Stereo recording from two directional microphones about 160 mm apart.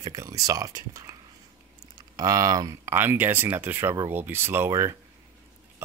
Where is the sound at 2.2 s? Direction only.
20° right (ahead or behind).